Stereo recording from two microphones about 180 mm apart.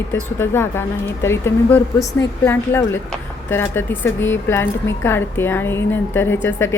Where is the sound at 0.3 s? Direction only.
15° left (ahead or behind).